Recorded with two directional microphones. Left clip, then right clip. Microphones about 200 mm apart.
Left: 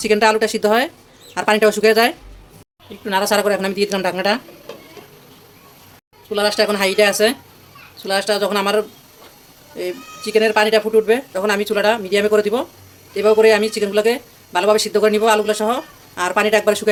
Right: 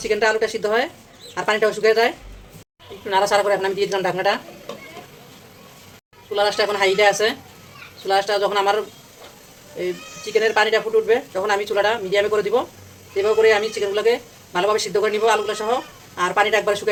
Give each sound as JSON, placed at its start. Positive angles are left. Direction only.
{"t": 0.0, "sound": "speech", "side_deg": 60}
{"t": 6.3, "sound": "speech", "side_deg": 55}